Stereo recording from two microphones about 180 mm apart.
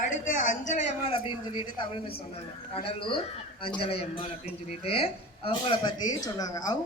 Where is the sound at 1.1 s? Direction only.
25° left (ahead or behind).